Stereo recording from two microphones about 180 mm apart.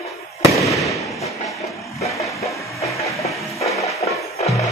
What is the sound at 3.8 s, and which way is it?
Music, 15° left (ahead or behind).